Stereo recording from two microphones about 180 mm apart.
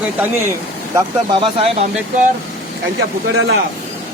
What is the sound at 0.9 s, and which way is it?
Speech, 25° right (ahead or behind).